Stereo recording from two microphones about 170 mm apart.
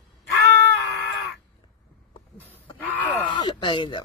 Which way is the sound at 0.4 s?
90° right.